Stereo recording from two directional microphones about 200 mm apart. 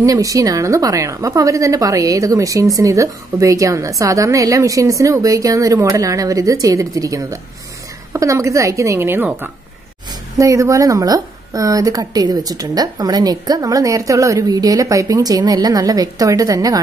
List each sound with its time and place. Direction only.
0.0 s a woman's voice: 15° right (ahead or behind)